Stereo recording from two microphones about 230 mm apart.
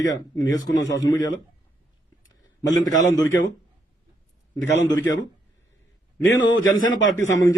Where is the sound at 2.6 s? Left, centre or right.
Centre.